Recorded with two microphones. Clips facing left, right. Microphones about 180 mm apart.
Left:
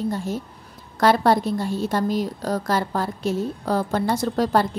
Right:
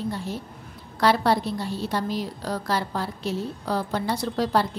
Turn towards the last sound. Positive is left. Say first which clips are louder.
# left 3 dB
turn(degrees=50)  # may be behind; listen again after turning